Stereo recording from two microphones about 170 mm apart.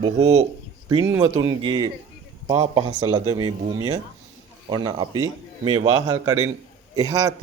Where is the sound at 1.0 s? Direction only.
15° right (ahead or behind).